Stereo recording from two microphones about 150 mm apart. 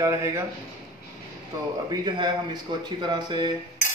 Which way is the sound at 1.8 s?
30° right (ahead or behind).